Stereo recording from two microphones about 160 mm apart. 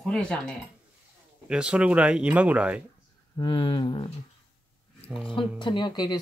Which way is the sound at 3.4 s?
35° left (ahead or behind).